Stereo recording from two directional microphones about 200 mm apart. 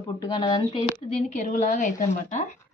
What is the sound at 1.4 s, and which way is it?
A woman's voice, 40° left (ahead or behind).